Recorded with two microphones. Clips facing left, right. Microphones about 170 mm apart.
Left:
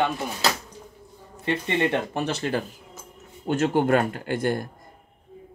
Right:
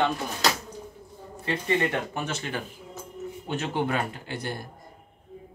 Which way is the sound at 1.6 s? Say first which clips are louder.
Even; 25° left (ahead or behind).